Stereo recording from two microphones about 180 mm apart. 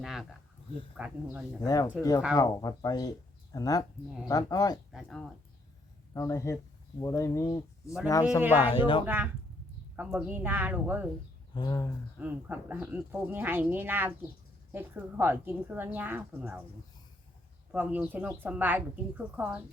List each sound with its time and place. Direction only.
0.0 s speech: centre (ahead or behind)
1.6 s speech: 20° left (ahead or behind)
4.9 s speech: centre (ahead or behind)
6.1 s speech: 15° left (ahead or behind)
8.4 s a woman's voice: 10° right (ahead or behind)
8.7 s speech: 30° left (ahead or behind)
9.0 s a woman's voice: 10° right (ahead or behind)
11.5 s speech: 20° left (ahead or behind)
12.2 s a woman's voice: 10° right (ahead or behind)
17.7 s a woman's voice: 10° right (ahead or behind)